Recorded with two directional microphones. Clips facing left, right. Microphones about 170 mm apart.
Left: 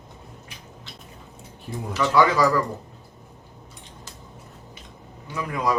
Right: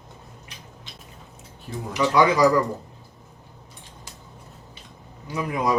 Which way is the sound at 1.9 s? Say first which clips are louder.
Even; 15° right (ahead or behind).